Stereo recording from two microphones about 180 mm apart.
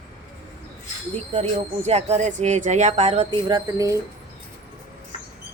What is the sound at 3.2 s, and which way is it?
Speech, 20° right (ahead or behind).